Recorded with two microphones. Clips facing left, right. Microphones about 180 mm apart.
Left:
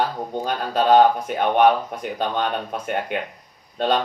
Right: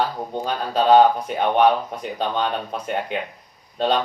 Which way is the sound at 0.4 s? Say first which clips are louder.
Right 1 dB; 50° left (ahead or behind).